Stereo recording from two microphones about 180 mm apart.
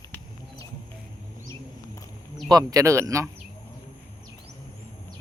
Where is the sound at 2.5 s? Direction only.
20° right (ahead or behind).